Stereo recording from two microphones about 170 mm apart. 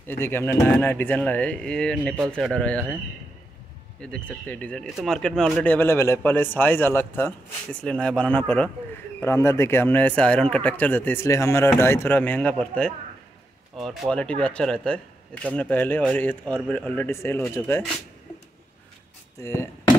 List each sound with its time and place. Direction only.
0.1 s speech: 15° left (ahead or behind)
4.0 s speech: 5° left (ahead or behind)
19.4 s speech: 15° left (ahead or behind)